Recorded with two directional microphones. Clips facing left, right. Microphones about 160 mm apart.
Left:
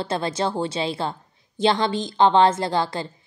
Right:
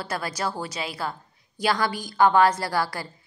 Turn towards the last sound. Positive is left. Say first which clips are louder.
# left 3 dB
turn(degrees=20)  # may be behind; listen again after turning